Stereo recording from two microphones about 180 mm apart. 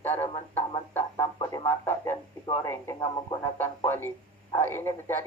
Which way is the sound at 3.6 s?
10° left (ahead or behind).